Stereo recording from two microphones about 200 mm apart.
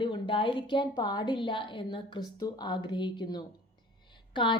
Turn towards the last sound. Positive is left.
turn(degrees=25)  # may be behind; listen again after turning